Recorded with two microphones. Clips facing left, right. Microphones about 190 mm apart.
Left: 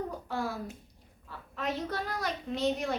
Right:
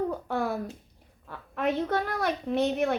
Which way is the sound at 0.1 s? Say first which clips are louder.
Right 6 dB; 60° right (ahead or behind).